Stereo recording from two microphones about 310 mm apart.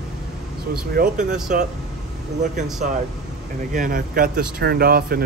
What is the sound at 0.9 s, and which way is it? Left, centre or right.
Speech, right.